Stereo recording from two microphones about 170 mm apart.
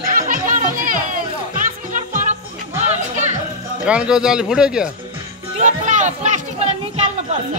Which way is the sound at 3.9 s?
5° right (ahead or behind).